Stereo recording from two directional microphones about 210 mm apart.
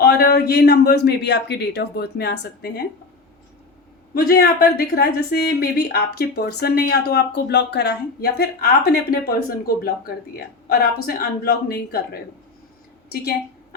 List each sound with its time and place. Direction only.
0.0 s a woman's voice: 50° left (ahead or behind)
4.1 s a woman's voice: 45° left (ahead or behind)